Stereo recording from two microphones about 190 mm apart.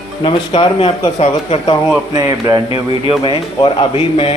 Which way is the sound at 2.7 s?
30° left (ahead or behind).